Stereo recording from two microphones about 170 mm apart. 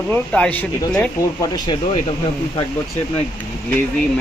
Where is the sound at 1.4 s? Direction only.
25° left (ahead or behind).